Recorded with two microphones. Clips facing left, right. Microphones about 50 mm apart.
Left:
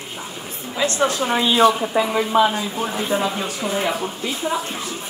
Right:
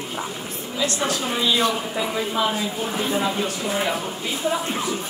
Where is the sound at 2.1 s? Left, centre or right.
Left.